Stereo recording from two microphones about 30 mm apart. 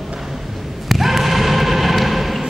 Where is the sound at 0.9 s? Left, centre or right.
Centre.